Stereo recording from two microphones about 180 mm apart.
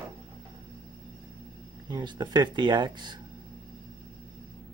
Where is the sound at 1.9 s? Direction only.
25° right (ahead or behind).